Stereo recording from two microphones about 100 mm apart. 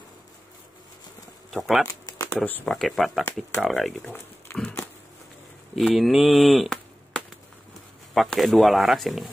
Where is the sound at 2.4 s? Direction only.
15° left (ahead or behind).